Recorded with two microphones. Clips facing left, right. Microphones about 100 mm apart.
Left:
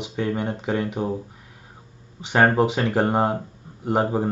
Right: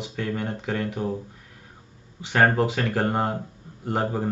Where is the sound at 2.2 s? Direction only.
20° left (ahead or behind).